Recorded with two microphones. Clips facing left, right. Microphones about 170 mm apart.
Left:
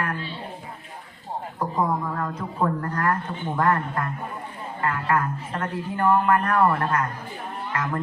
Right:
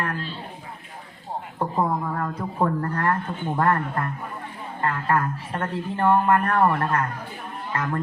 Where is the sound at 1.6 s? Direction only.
30° right (ahead or behind).